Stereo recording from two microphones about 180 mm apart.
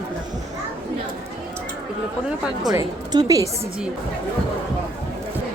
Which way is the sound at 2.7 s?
20° right (ahead or behind).